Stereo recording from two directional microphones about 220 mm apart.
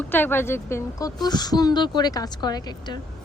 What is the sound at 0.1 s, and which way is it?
A woman's voice, 10° left (ahead or behind).